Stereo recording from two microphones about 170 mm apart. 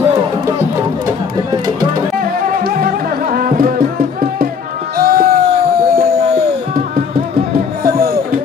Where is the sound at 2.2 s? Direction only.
55° right (ahead or behind).